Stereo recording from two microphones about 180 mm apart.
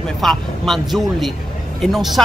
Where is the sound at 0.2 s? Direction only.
Centre (ahead or behind).